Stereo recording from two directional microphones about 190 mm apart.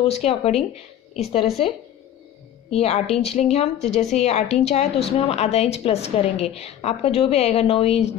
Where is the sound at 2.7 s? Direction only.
35° left (ahead or behind).